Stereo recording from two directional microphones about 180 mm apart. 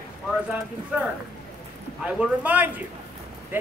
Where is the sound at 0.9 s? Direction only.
5° right (ahead or behind).